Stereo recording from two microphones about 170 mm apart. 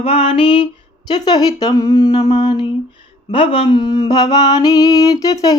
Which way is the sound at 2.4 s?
25° left (ahead or behind).